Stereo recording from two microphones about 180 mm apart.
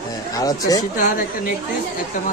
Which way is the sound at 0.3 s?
20° left (ahead or behind).